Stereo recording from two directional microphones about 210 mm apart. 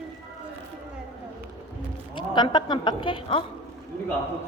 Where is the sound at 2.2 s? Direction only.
20° left (ahead or behind).